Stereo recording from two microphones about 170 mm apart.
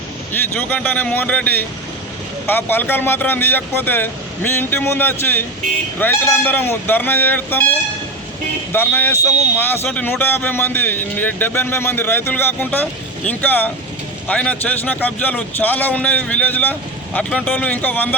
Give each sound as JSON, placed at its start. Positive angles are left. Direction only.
{"t": 0.3, "sound": "speech", "side_deg": 10}
{"t": 8.7, "sound": "speech", "side_deg": 10}